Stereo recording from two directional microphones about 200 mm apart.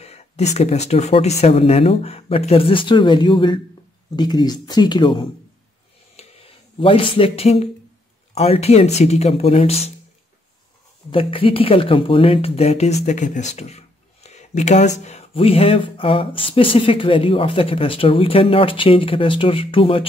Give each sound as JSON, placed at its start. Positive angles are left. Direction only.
{"t": 0.0, "sound": "speech", "side_deg": 30}
{"t": 6.1, "sound": "a sound", "side_deg": 30}
{"t": 8.4, "sound": "speech", "side_deg": 30}
{"t": 11.1, "sound": "speech", "side_deg": 25}